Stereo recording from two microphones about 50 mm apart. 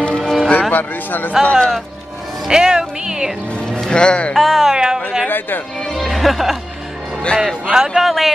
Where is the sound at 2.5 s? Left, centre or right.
Centre.